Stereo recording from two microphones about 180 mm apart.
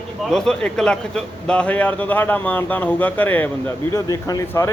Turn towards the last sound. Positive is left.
turn(degrees=20)  # may be behind; listen again after turning